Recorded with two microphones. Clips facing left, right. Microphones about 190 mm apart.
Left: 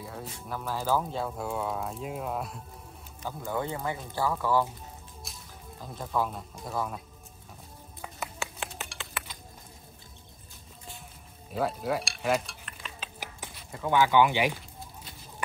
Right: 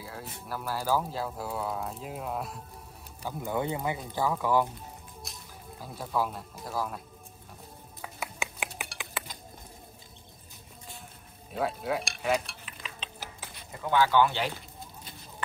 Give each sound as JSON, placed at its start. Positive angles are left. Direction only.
{"t": 0.0, "sound": "speech", "side_deg": -5}
{"t": 3.3, "sound": "speech", "side_deg": -15}
{"t": 5.2, "sound": "speech", "side_deg": -5}
{"t": 8.4, "sound": "a sound", "side_deg": -15}
{"t": 11.5, "sound": "cutlery", "side_deg": 0}
{"t": 13.8, "sound": "speech", "side_deg": 15}